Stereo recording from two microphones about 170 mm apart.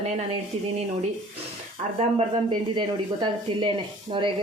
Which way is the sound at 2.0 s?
30° right (ahead or behind).